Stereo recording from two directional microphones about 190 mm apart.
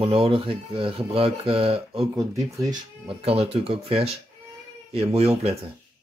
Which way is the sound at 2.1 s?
15° right (ahead or behind).